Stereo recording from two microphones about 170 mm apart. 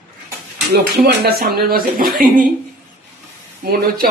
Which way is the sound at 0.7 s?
70° right (ahead or behind).